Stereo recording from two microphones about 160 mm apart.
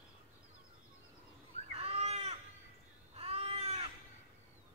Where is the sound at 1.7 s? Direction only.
40° right (ahead or behind).